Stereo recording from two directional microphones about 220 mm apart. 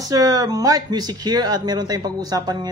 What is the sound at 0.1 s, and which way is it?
Speech, 15° right (ahead or behind).